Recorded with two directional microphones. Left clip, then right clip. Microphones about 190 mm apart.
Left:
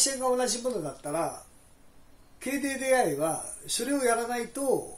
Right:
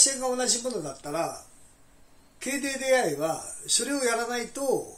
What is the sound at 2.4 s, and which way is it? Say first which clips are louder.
A man's voice: right 1 dB; 20° left (ahead or behind).